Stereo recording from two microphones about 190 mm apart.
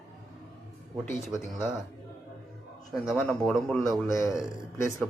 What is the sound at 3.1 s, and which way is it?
Speech, 5° left (ahead or behind).